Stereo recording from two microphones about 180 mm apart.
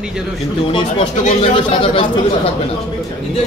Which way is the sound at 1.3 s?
35° left (ahead or behind).